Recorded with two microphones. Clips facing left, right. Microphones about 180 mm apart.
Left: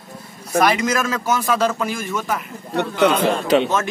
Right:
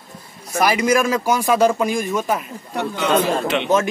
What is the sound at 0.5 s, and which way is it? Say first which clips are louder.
A man's voice: right 1 dB; 10° right (ahead or behind).